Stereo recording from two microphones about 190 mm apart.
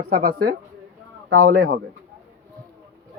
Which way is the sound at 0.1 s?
50° right (ahead or behind).